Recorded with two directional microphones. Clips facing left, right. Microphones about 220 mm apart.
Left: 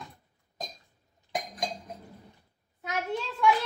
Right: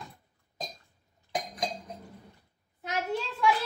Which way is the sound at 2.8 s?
Centre (ahead or behind).